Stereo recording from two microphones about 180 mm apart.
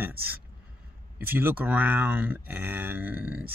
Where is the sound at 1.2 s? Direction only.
10° right (ahead or behind).